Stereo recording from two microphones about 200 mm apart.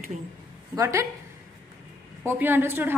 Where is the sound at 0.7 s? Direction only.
15° right (ahead or behind).